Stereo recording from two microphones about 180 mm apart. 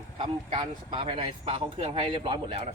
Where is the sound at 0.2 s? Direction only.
25° right (ahead or behind).